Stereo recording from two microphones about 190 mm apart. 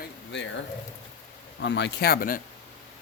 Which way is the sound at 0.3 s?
65° left (ahead or behind).